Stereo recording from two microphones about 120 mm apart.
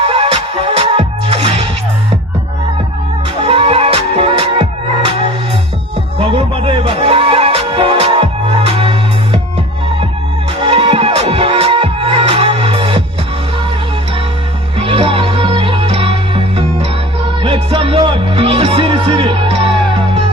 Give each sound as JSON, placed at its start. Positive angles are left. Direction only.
{"t": 0.0, "sound": "music", "side_deg": -55}
{"t": 3.4, "sound": "music", "side_deg": -55}
{"t": 10.6, "sound": "music", "side_deg": -55}
{"t": 14.8, "sound": "music", "side_deg": -55}